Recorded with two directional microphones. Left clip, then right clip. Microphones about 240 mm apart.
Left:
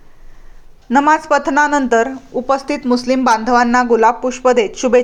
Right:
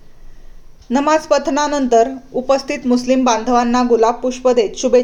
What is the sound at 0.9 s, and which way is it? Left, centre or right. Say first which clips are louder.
Speech: left 2 dB; centre.